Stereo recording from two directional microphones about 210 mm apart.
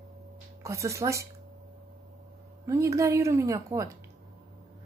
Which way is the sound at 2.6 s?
15° right (ahead or behind).